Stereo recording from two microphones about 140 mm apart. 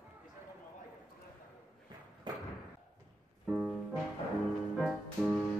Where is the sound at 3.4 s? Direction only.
Centre (ahead or behind).